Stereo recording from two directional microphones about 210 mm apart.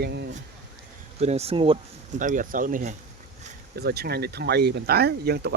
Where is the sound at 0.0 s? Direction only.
55° right (ahead or behind).